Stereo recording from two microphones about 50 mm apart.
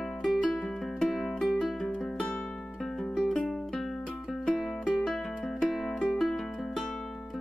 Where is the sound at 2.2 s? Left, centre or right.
Centre.